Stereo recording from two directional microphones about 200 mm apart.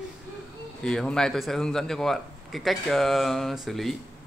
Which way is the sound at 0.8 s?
5° left (ahead or behind).